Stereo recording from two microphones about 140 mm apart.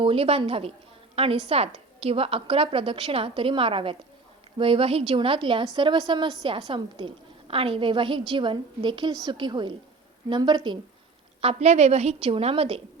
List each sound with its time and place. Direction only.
0.0 s a woman's voice: 40° right (ahead or behind)
11.3 s a woman's voice: 50° right (ahead or behind)